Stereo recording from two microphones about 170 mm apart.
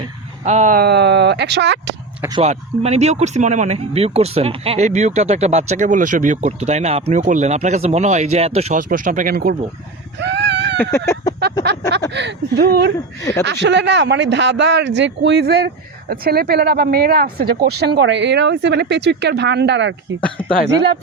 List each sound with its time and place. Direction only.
0.4 s speech: 45° right (ahead or behind)
0.8 s speech: 75° right (ahead or behind)
2.4 s speech: 40° right (ahead or behind)
8.9 s speech: 55° right (ahead or behind)
10.2 s a sound: 90° right
10.8 s chicken: 15° left (ahead or behind)
12.1 s speech: 80° right
13.4 s speech: 90° right